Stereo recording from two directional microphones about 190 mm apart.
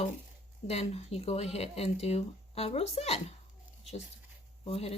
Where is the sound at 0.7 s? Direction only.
35° left (ahead or behind).